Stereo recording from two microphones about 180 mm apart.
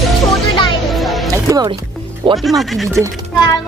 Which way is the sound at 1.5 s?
20° right (ahead or behind).